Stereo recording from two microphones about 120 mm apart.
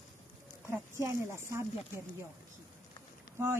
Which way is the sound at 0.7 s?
20° right (ahead or behind).